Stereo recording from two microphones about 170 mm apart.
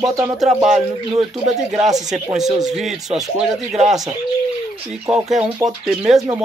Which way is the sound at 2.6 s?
Centre (ahead or behind).